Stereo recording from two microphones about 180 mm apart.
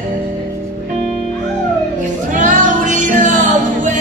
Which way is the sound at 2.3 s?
45° right (ahead or behind).